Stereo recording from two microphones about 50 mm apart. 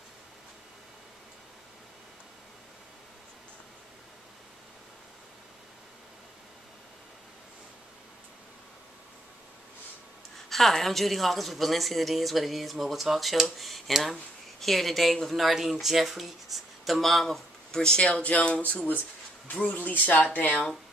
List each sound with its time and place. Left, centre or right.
10.5 s speech: centre
18.0 s speech: left